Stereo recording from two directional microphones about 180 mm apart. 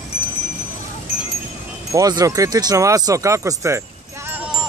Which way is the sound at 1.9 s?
20° right (ahead or behind).